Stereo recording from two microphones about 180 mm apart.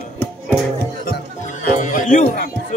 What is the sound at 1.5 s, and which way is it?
Music, 45° left (ahead or behind).